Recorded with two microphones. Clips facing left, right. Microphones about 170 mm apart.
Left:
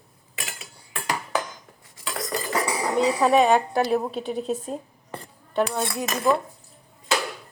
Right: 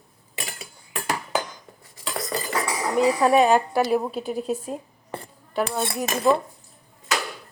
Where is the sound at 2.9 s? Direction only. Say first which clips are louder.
Right 1 dB; centre (ahead or behind).